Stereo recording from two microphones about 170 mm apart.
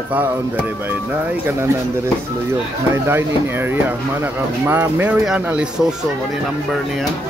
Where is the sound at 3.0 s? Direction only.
15° right (ahead or behind).